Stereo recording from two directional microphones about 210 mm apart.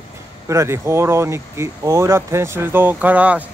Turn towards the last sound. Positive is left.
turn(degrees=-5)  # may be behind; listen again after turning